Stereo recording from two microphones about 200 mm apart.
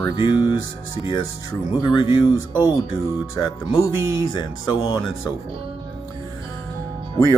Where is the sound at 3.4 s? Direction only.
25° left (ahead or behind).